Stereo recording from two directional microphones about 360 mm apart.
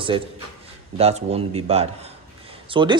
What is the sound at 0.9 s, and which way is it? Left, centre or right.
A man's voice, centre.